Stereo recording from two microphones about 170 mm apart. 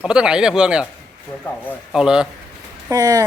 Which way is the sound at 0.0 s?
5° right (ahead or behind).